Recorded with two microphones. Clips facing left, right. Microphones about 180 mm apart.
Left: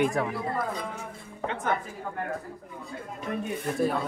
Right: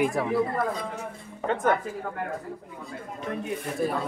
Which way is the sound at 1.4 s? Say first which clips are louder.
Right 6 dB; 45° right (ahead or behind).